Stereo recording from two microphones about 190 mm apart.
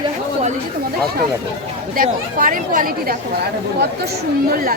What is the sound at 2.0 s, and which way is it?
Speech, 45° right (ahead or behind).